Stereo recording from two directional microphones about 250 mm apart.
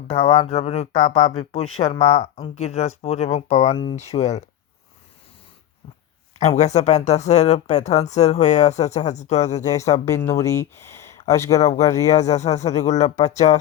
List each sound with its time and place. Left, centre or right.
0.1 s speech: left
6.4 s speech: left
9.7 s speech: centre
12.0 s speech: left